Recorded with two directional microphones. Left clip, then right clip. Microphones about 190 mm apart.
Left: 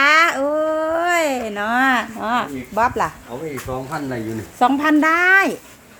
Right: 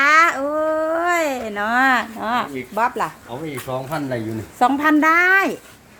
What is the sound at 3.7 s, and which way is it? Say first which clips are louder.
Speech: right 2 dB; 60° right (ahead or behind).